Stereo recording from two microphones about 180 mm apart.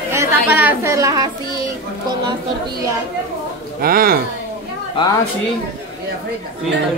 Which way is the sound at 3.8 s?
55° right (ahead or behind).